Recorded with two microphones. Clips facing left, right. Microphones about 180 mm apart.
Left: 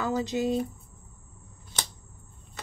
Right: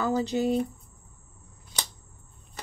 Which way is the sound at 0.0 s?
30° right (ahead or behind).